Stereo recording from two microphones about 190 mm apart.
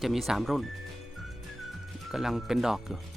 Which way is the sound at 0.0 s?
Centre (ahead or behind).